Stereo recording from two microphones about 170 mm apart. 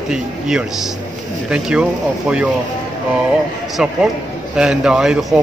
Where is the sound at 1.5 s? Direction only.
5° right (ahead or behind).